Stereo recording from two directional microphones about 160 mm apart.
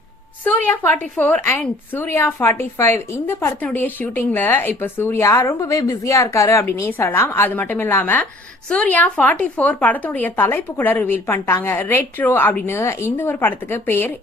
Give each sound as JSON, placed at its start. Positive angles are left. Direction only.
{"t": 0.4, "sound": "speech", "side_deg": 10}